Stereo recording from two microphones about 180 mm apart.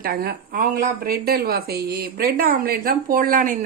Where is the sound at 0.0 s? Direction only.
60° right (ahead or behind).